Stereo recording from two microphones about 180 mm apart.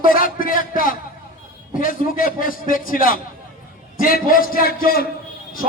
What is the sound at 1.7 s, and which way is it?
A man's voice, 50° left (ahead or behind).